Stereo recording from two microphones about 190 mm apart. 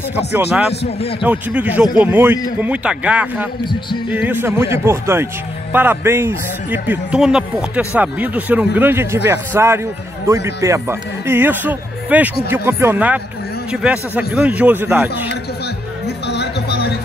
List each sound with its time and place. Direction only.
1.2 s a man's voice: 5° right (ahead or behind)
16.3 s music: 60° left (ahead or behind)